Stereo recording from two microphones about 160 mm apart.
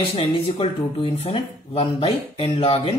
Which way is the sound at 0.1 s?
40° left (ahead or behind).